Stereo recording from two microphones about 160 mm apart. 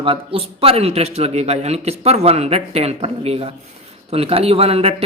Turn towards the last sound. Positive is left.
turn(degrees=-40)  # may be behind; listen again after turning